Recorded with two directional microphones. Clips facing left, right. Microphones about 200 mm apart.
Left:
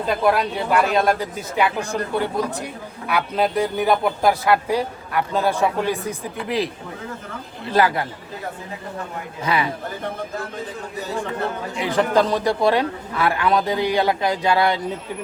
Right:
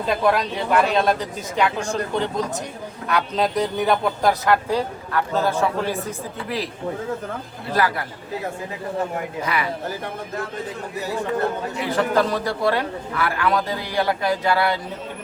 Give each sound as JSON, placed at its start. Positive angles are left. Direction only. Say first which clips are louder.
{"t": 0.2, "sound": "speech", "louder": "left 1 dB", "side_deg": 0}
{"t": 7.7, "sound": "a man's voice", "louder": "left 3 dB", "side_deg": 25}
{"t": 9.5, "sound": "a man's voice", "louder": "left 5 dB", "side_deg": 25}
{"t": 11.8, "sound": "a man's voice", "louder": "left 2 dB", "side_deg": 20}